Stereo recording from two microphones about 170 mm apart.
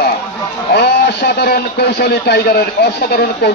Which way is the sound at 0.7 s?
70° left (ahead or behind).